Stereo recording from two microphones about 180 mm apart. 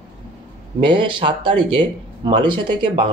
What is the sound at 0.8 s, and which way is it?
Speech, 25° right (ahead or behind).